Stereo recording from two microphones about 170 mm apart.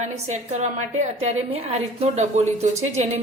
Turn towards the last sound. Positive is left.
turn(degrees=-40)  # may be behind; listen again after turning